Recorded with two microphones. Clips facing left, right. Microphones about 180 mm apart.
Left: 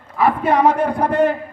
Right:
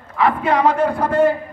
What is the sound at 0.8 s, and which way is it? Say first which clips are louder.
Speech: even; 15° left (ahead or behind).